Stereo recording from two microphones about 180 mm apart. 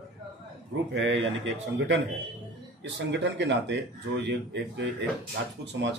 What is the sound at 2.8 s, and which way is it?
Speech, 80° right.